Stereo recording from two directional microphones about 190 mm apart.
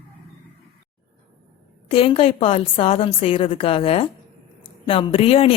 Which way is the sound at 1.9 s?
30° left (ahead or behind).